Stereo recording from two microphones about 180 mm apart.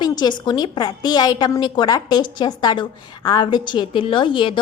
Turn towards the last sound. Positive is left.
turn(degrees=25)  # may be behind; listen again after turning